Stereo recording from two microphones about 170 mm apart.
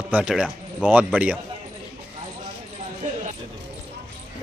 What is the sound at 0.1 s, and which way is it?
Speech, 5° right (ahead or behind).